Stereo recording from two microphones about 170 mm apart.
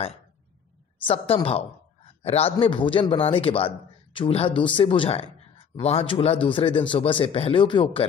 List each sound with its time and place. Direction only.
1.0 s a man's voice: 35° left (ahead or behind)